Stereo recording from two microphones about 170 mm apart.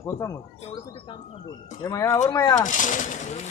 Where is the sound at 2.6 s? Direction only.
50° left (ahead or behind).